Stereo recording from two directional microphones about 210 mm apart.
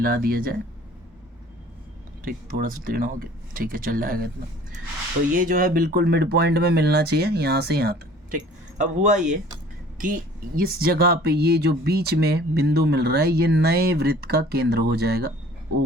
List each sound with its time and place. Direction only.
0.0 s speech: 45° right (ahead or behind)
2.2 s speech: 40° right (ahead or behind)
5.4 s speech: 40° right (ahead or behind)